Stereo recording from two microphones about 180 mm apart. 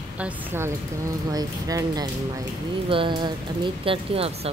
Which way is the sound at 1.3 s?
20° right (ahead or behind).